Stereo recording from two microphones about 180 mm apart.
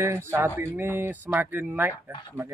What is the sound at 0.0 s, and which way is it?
Speech, 15° right (ahead or behind).